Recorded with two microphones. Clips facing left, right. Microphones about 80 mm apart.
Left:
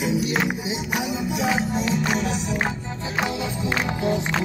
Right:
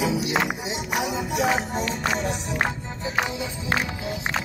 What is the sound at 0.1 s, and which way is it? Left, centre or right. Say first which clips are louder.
Music: left 1 dB; right.